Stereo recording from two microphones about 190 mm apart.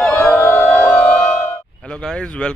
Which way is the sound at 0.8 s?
15° left (ahead or behind).